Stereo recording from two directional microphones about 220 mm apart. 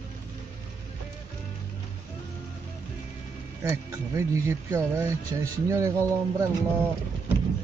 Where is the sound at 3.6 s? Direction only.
15° right (ahead or behind).